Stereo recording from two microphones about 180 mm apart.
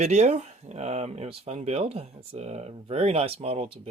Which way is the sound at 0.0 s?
40° right (ahead or behind).